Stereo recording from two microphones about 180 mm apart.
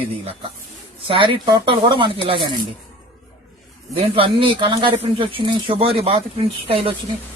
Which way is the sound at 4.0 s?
30° right (ahead or behind).